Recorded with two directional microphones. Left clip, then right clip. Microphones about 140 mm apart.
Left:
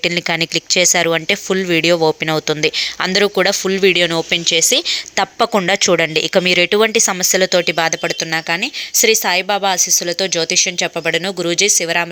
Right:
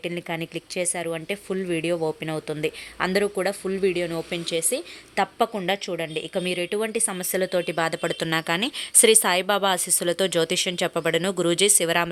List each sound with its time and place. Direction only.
0.0 s speech: 30° left (ahead or behind)
6.1 s speech: 35° left (ahead or behind)
7.0 s speech: 20° left (ahead or behind)
8.3 s speech: centre (ahead or behind)